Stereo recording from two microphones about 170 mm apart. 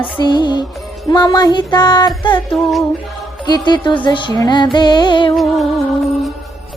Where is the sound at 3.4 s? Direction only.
25° left (ahead or behind).